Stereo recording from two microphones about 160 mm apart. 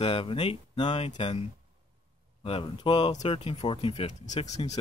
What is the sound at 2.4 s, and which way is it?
Speech, 35° left (ahead or behind).